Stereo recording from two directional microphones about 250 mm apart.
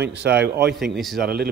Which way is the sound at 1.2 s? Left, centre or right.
Right.